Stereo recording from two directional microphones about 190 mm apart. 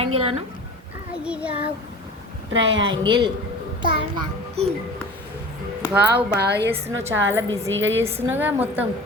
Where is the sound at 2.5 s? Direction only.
70° right (ahead or behind).